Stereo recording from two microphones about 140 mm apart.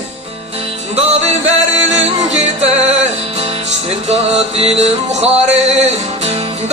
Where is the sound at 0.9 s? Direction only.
50° right (ahead or behind).